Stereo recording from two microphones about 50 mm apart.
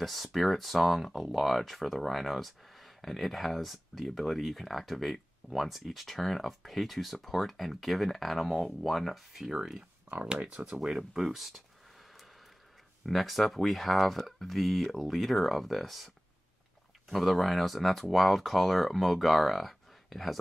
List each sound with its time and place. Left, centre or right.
0.0 s speech: centre
10.4 s speech: right
10.8 s speech: centre
13.0 s speech: centre
17.1 s speech: centre